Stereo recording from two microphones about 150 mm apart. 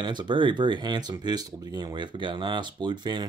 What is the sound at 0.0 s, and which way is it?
Speech, 30° right (ahead or behind).